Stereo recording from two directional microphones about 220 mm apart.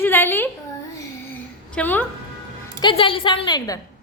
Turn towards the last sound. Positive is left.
turn(degrees=20)  # may be behind; listen again after turning